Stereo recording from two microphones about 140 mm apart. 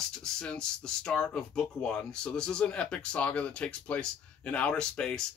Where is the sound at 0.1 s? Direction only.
5° left (ahead or behind).